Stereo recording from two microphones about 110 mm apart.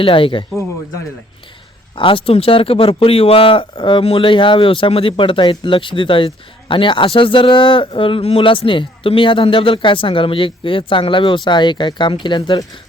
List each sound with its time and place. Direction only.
0.0 s a man's voice: 55° left (ahead or behind)
2.0 s a man's voice: 50° left (ahead or behind)